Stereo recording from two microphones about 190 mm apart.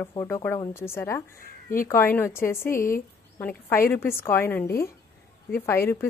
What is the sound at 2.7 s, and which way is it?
Speech, 45° left (ahead or behind).